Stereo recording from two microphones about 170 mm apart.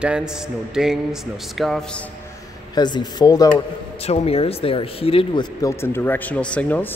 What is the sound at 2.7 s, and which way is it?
Speech, 25° left (ahead or behind).